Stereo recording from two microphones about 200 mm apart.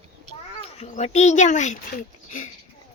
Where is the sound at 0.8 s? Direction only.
35° left (ahead or behind).